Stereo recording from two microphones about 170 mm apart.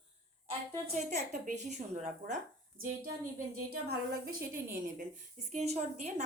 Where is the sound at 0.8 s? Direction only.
45° right (ahead or behind).